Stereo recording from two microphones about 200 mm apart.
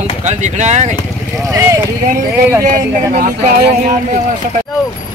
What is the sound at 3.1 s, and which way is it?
Speech, 40° right (ahead or behind).